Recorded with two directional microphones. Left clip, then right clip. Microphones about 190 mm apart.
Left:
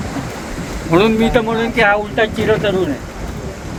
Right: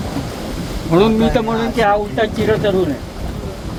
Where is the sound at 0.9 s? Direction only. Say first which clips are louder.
Left 1 dB; 20° left (ahead or behind).